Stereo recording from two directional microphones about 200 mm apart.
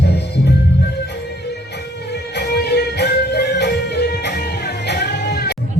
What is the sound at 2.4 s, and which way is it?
Music, 55° left (ahead or behind).